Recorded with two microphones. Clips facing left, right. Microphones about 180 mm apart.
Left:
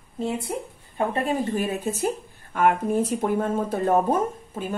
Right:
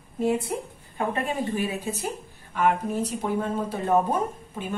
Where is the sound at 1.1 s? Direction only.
40° left (ahead or behind).